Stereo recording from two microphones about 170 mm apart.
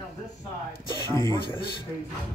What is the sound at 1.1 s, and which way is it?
Speech, 15° left (ahead or behind).